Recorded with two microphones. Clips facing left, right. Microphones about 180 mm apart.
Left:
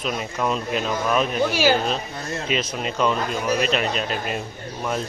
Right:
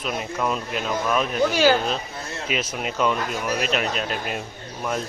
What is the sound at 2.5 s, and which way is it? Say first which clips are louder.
A man's voice: left 1 dB; 10° right (ahead or behind).